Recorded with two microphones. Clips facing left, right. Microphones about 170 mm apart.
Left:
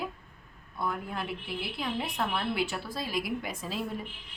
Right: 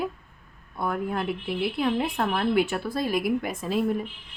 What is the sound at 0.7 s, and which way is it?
A woman's voice, 55° right (ahead or behind).